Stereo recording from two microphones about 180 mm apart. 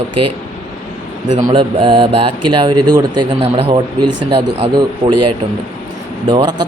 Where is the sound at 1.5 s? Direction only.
25° right (ahead or behind).